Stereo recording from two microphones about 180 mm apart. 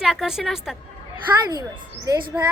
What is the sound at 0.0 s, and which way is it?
Speech, 5° right (ahead or behind).